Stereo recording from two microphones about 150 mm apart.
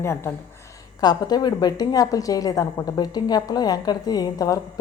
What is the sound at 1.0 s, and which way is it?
Speech, 25° left (ahead or behind).